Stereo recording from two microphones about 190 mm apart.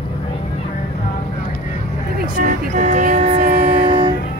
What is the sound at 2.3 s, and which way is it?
Music, 40° right (ahead or behind).